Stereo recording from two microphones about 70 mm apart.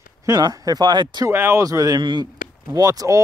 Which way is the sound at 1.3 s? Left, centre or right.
Right.